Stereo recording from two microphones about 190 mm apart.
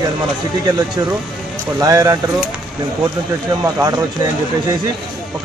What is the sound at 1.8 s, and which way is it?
Speech, 20° right (ahead or behind).